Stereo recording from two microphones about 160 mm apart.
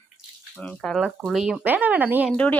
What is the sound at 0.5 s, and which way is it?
Speech, 5° left (ahead or behind).